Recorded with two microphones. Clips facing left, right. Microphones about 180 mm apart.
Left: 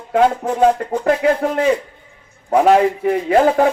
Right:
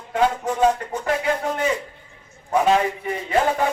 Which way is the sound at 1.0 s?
55° left (ahead or behind).